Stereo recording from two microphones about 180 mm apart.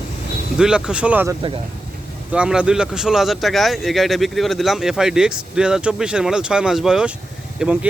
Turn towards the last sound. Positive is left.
turn(degrees=-5)  # may be behind; listen again after turning